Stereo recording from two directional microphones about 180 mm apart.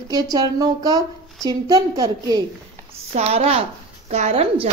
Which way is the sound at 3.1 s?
35° right (ahead or behind).